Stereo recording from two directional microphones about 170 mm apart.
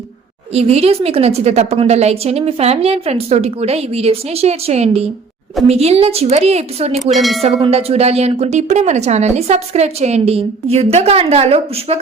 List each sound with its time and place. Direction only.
0.5 s a woman's voice: 40° right (ahead or behind)
7.0 s speech: centre (ahead or behind)
7.7 s a woman's voice: 35° right (ahead or behind)